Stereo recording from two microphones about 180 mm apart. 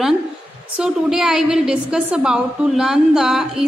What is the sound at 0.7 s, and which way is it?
A woman's voice, 5° right (ahead or behind).